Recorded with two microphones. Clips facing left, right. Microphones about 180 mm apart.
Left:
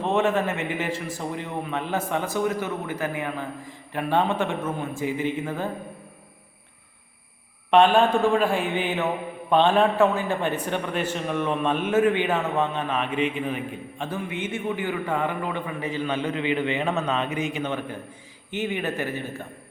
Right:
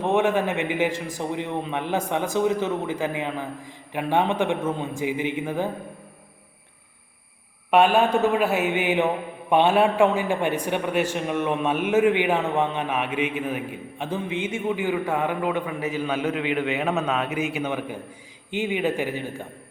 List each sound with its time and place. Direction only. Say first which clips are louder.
0.0 s a man's voice: right 1 dB; 10° right (ahead or behind)
7.7 s a man's voice: left 1 dB; 5° right (ahead or behind)